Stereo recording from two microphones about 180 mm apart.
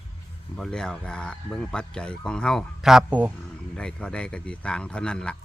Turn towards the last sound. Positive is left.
turn(degrees=5)  # may be behind; listen again after turning